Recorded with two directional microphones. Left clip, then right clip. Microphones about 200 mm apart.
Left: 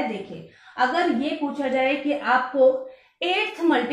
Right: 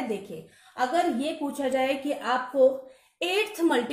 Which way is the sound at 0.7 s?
55° right (ahead or behind).